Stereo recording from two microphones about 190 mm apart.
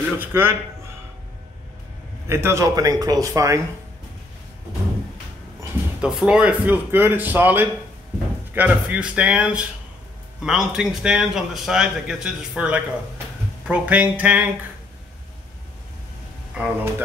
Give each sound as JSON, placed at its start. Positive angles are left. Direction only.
{"t": 0.2, "sound": "speech", "side_deg": -10}
{"t": 2.2, "sound": "speech", "side_deg": -15}
{"t": 5.9, "sound": "speech", "side_deg": -5}
{"t": 16.5, "sound": "speech", "side_deg": -5}